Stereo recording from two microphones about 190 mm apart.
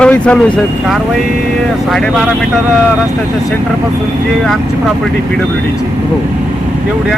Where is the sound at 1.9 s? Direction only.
Centre (ahead or behind).